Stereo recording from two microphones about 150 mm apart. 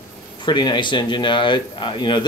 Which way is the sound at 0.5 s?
30° left (ahead or behind).